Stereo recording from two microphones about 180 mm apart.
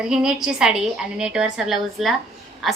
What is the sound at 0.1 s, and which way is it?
A woman's voice, 5° right (ahead or behind).